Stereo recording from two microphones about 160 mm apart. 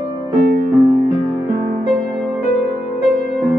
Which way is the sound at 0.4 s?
65° right (ahead or behind).